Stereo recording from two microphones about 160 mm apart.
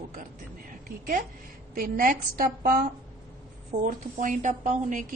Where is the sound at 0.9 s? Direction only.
65° right (ahead or behind).